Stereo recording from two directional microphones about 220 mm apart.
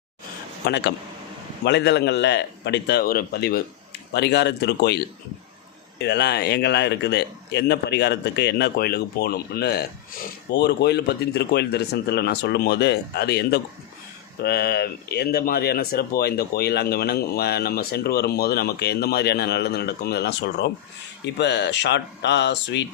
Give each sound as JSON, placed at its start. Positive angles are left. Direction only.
{"t": 0.6, "sound": "speech", "side_deg": 50}